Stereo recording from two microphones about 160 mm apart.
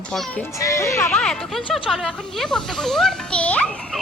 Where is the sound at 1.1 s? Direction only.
5° left (ahead or behind).